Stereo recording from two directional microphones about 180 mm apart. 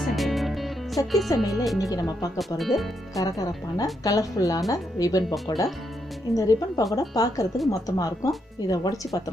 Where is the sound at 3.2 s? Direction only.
20° left (ahead or behind).